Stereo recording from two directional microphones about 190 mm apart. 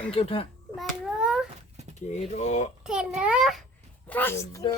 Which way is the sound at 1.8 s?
35° right (ahead or behind).